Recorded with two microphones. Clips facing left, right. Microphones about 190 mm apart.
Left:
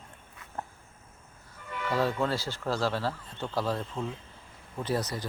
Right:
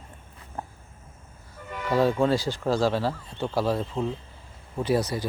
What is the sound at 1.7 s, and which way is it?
Music, 40° right (ahead or behind).